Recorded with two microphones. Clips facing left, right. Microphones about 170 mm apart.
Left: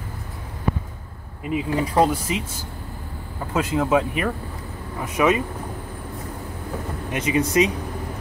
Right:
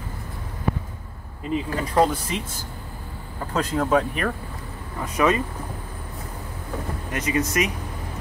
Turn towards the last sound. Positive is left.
turn(degrees=20)  # may be behind; listen again after turning